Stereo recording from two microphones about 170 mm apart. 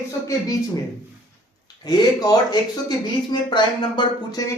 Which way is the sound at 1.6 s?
25° left (ahead or behind).